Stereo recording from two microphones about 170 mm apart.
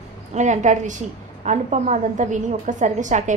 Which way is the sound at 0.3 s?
45° right (ahead or behind).